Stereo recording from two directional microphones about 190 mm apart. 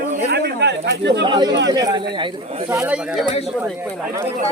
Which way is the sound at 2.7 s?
10° right (ahead or behind).